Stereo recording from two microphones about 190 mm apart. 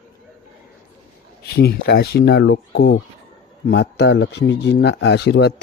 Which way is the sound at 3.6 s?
65° left (ahead or behind).